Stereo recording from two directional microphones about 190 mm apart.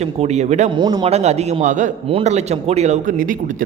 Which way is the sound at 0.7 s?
20° right (ahead or behind).